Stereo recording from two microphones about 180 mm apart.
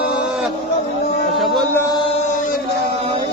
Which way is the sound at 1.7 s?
15° left (ahead or behind).